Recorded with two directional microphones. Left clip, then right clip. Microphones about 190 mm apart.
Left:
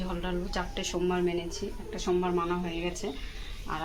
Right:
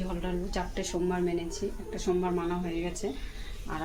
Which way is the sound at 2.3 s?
Centre (ahead or behind).